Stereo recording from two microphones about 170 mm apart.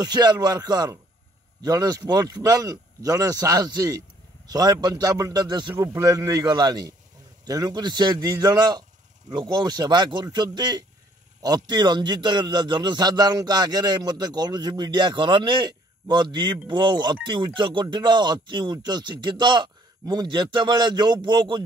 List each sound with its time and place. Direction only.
0.0 s a man's voice: 25° right (ahead or behind)